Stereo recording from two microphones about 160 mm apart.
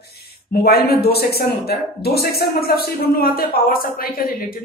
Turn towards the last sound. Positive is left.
turn(degrees=70)  # may be behind; listen again after turning